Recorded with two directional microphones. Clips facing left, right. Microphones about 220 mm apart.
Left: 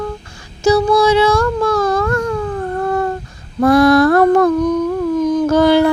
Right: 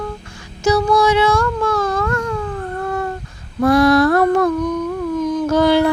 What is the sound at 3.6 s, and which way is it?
Female singing, 50° left (ahead or behind).